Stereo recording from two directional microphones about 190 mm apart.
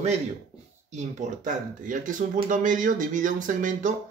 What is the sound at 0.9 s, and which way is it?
Speech, 40° right (ahead or behind).